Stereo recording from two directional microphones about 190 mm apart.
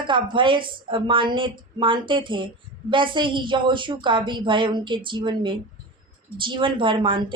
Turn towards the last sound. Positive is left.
turn(degrees=-25)  # may be behind; listen again after turning